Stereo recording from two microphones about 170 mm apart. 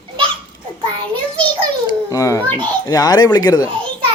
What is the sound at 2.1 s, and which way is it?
Speech, 20° left (ahead or behind).